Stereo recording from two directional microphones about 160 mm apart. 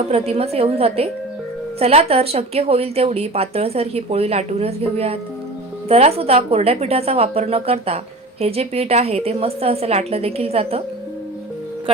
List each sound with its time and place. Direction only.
0.1 s a woman's voice: 40° right (ahead or behind)